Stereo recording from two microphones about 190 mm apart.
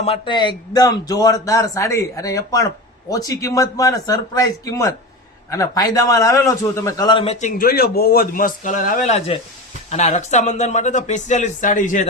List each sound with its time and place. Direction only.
0.0 s a man's voice: 30° left (ahead or behind)
7.4 s a man's voice: 50° left (ahead or behind)